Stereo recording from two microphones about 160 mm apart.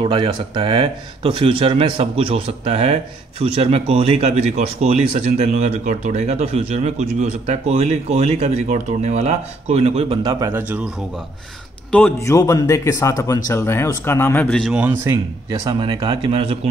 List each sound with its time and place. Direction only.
0.0 s speech: 30° right (ahead or behind)
10.2 s speech: 20° right (ahead or behind)
12.3 s speech: 20° left (ahead or behind)
14.7 s a man's voice: 10° right (ahead or behind)
15.6 s speech: 30° right (ahead or behind)